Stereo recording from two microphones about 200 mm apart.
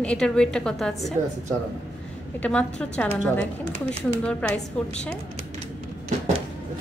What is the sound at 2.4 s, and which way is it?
A woman's voice, 5° left (ahead or behind).